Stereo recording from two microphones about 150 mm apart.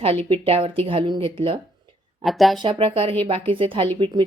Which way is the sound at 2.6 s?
35° right (ahead or behind).